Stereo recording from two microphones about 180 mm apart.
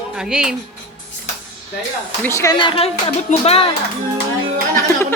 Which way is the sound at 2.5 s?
30° left (ahead or behind).